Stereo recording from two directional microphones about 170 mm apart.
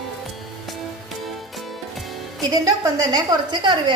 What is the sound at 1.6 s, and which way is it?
Music, centre (ahead or behind).